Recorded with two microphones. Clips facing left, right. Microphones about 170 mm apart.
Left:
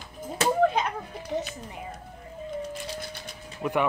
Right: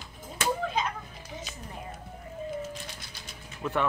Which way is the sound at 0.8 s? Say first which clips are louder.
Left 3 dB; 60° left (ahead or behind).